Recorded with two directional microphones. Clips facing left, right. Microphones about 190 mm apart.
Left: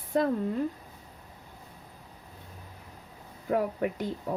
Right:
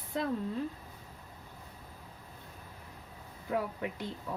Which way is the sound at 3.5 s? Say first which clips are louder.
Left 6 dB; 45° left (ahead or behind).